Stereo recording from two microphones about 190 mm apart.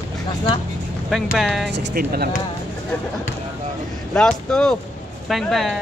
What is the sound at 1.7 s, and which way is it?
Speech, 60° right (ahead or behind).